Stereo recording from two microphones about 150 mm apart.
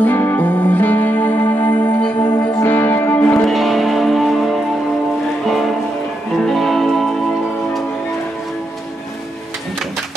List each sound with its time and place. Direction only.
0.0 s music: 15° left (ahead or behind)
3.4 s music: centre (ahead or behind)